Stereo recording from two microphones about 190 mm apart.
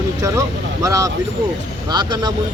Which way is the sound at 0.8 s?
20° right (ahead or behind).